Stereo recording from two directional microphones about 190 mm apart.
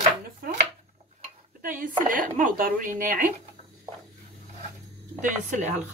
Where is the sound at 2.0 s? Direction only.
45° right (ahead or behind).